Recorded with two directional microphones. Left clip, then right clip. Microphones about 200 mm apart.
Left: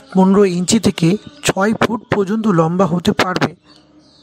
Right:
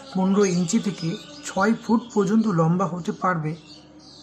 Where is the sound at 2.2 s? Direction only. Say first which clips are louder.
Left 8 dB; 45° left (ahead or behind).